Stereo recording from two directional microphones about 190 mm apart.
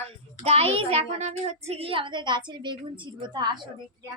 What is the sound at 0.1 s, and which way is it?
A child's voice, 30° right (ahead or behind).